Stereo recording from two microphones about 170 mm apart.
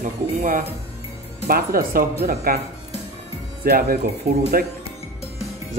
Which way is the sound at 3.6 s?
60° right (ahead or behind).